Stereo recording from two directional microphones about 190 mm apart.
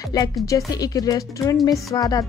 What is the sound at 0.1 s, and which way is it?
Speech, 20° left (ahead or behind).